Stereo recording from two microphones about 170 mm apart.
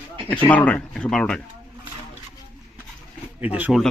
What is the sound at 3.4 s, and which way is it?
Speech, 10° right (ahead or behind).